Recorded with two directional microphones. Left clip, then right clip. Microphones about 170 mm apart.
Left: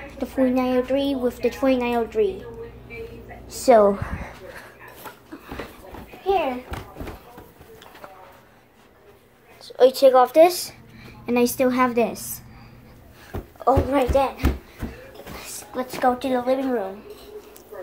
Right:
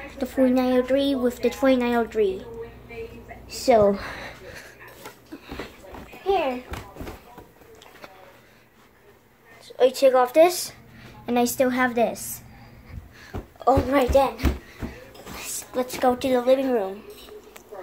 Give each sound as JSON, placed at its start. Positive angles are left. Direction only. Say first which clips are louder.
{"t": 0.2, "sound": "speech", "louder": "even", "side_deg": -15}
{"t": 3.4, "sound": "a woman's voice", "louder": "left 3 dB", "side_deg": -10}
{"t": 3.9, "sound": "speech", "louder": "even", "side_deg": -30}
{"t": 9.7, "sound": "a woman's voice", "louder": "left 3 dB", "side_deg": 5}
{"t": 13.7, "sound": "a woman's voice", "louder": "even", "side_deg": -20}
{"t": 16.0, "sound": "a woman's voice", "louder": "left 1 dB", "side_deg": -30}